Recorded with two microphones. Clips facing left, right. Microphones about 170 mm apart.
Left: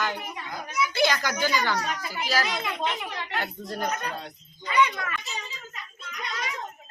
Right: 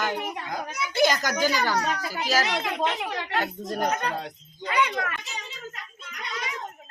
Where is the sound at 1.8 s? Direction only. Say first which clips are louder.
Right 3 dB; 90° right.